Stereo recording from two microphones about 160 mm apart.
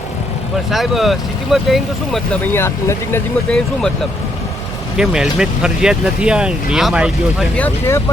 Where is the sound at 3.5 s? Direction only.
5° left (ahead or behind).